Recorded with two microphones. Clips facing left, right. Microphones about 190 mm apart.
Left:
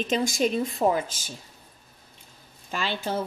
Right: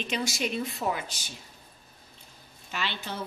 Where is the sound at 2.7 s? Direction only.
45° left (ahead or behind).